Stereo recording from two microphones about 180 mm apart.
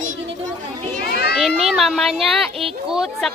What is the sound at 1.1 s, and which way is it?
Children playing, 60° left (ahead or behind).